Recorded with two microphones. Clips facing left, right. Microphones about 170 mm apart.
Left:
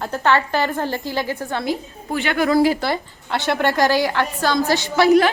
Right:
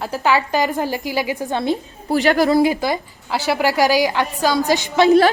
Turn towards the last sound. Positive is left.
turn(degrees=-20)  # may be behind; listen again after turning